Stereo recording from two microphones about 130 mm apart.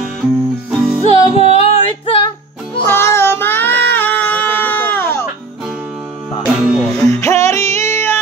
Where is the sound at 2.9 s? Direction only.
20° left (ahead or behind).